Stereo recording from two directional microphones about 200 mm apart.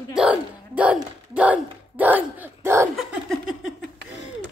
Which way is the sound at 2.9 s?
Centre (ahead or behind).